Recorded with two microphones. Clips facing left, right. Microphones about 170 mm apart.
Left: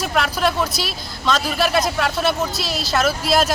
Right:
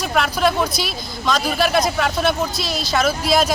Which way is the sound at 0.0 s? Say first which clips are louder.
Right 1 dB; centre (ahead or behind).